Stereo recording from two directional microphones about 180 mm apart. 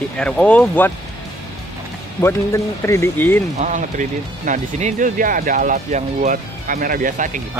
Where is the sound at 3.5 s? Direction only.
45° right (ahead or behind).